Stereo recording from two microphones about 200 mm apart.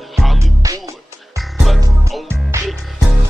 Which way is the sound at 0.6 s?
15° right (ahead or behind).